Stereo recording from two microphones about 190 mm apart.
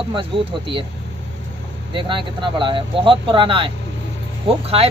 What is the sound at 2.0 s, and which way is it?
Speech, 25° right (ahead or behind).